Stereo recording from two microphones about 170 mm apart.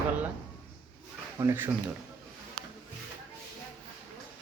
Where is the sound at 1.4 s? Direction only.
15° right (ahead or behind).